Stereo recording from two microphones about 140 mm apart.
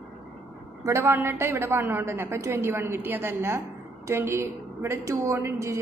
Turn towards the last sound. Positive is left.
turn(degrees=-20)  # may be behind; listen again after turning